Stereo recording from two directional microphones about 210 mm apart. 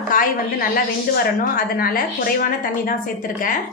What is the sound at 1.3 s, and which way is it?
A woman's voice, 45° left (ahead or behind).